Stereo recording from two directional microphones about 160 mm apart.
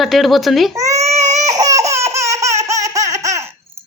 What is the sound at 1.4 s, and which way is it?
Laughter, 20° right (ahead or behind).